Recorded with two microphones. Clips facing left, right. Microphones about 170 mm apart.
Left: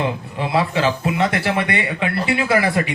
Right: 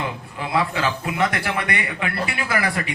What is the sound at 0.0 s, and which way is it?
A man's voice, 25° left (ahead or behind).